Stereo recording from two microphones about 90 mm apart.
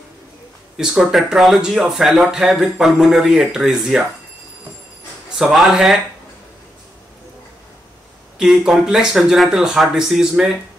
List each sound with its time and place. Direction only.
0.7 s speech: 5° right (ahead or behind)
5.4 s speech: 5° right (ahead or behind)
8.4 s speech: 5° right (ahead or behind)